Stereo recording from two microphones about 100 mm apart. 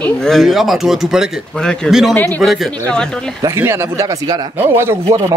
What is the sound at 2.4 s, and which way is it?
Speech, centre (ahead or behind).